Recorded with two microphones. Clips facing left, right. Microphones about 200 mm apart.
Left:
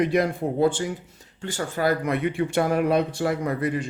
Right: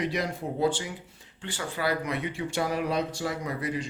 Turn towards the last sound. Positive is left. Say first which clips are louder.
# left 6 dB
turn(degrees=55)  # may be behind; listen again after turning